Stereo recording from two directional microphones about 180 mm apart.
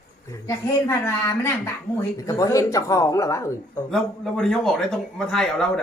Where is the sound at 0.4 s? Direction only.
15° left (ahead or behind).